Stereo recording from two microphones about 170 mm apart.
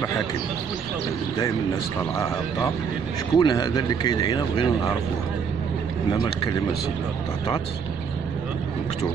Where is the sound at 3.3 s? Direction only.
25° left (ahead or behind).